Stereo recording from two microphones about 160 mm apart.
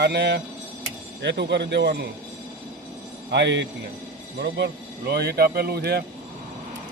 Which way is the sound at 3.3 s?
90° right.